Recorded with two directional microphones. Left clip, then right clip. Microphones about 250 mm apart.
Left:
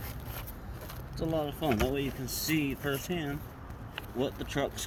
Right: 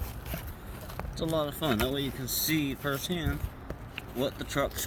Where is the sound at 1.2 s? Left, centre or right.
Right.